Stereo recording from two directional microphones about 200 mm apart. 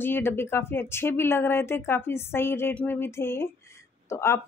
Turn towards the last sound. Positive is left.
turn(degrees=15)  # may be behind; listen again after turning